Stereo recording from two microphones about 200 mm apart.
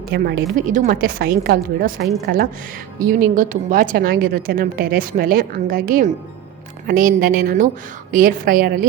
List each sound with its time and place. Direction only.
0.1 s a woman's voice: 50° right (ahead or behind)